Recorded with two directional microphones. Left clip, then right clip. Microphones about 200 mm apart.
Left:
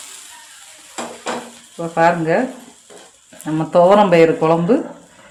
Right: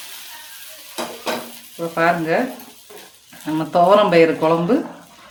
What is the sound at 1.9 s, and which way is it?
Speech, 40° left (ahead or behind).